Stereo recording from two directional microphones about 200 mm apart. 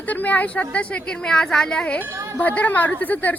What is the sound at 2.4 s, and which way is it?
Speech, 10° left (ahead or behind).